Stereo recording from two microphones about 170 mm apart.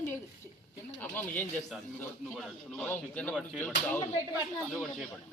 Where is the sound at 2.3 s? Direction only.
Centre (ahead or behind).